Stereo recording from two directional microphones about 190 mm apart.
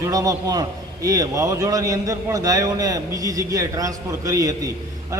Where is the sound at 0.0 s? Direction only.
20° right (ahead or behind).